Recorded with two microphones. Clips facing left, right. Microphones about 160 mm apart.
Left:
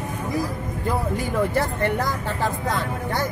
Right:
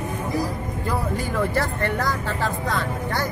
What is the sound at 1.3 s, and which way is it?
Speech, 20° left (ahead or behind).